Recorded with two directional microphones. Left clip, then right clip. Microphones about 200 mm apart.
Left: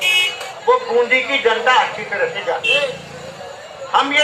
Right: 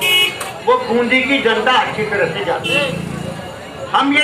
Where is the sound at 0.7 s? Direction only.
15° left (ahead or behind).